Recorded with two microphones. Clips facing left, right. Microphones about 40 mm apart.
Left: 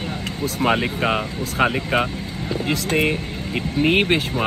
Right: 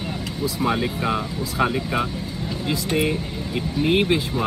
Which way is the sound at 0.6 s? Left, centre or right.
Left.